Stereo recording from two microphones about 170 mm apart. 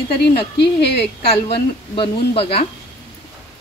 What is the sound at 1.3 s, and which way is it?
A woman's voice, 35° left (ahead or behind).